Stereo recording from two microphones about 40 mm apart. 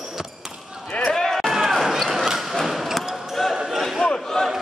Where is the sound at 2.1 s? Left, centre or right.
Centre.